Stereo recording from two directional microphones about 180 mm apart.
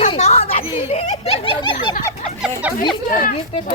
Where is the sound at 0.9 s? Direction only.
35° left (ahead or behind).